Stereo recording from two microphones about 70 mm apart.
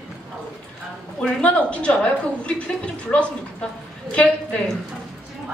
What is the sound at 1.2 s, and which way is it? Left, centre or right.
A woman's voice, centre.